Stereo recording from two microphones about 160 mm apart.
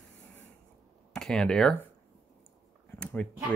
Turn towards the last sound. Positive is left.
turn(degrees=10)  # may be behind; listen again after turning